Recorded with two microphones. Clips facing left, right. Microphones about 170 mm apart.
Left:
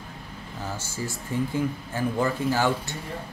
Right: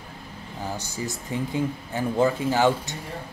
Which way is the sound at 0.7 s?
20° right (ahead or behind).